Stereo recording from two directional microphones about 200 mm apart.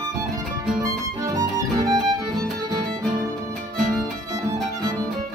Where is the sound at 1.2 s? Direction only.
15° right (ahead or behind).